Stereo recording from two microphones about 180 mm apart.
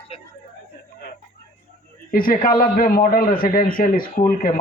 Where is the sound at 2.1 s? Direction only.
50° left (ahead or behind).